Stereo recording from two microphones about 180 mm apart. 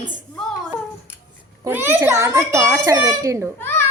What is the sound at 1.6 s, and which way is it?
A child's voice, 10° right (ahead or behind).